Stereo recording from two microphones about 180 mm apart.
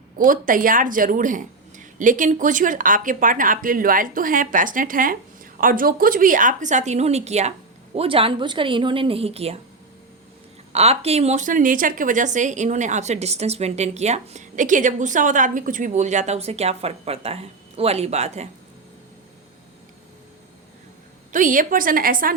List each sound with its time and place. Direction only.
0.2 s speech: 50° right (ahead or behind)
10.7 s speech: 35° right (ahead or behind)
21.3 s speech: 45° right (ahead or behind)